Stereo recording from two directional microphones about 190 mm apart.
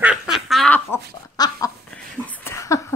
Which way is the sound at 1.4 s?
20° left (ahead or behind).